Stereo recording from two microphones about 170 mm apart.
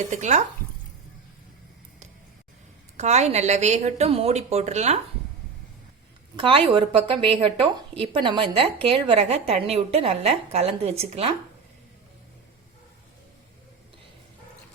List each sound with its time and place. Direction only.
0.1 s speech: 45° right (ahead or behind)
3.0 s a woman's voice: 40° right (ahead or behind)
6.3 s a woman's voice: 30° right (ahead or behind)